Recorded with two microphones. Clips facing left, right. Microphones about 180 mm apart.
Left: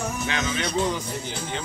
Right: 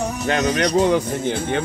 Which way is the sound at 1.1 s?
55° right (ahead or behind).